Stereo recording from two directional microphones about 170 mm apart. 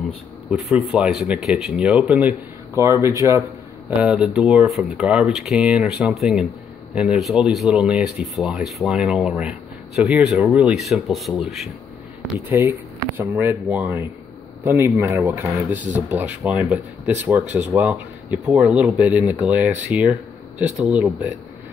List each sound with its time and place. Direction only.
0.5 s speech: 5° right (ahead or behind); by 3.4 s 20° right (ahead or behind)
4.0 s speech: 5° right (ahead or behind)
12.5 s speech: 15° right (ahead or behind)